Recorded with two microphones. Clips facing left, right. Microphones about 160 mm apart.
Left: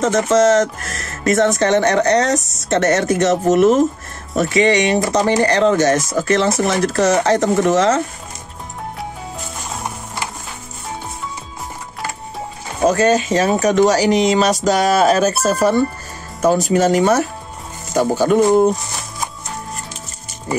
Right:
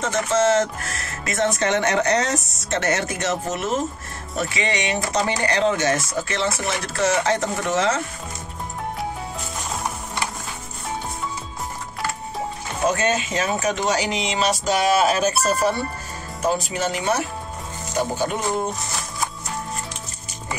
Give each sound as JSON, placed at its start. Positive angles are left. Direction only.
{"t": 0.0, "sound": "speech", "side_deg": 40}
{"t": 4.4, "sound": "speech", "side_deg": 40}
{"t": 12.8, "sound": "speech", "side_deg": 40}
{"t": 15.3, "sound": "speech", "side_deg": 0}
{"t": 16.3, "sound": "speech", "side_deg": 45}